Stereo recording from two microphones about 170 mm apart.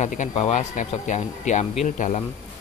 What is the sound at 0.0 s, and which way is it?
Speech, 45° left (ahead or behind).